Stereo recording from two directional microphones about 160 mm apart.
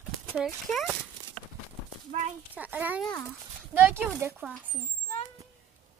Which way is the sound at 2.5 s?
10° right (ahead or behind).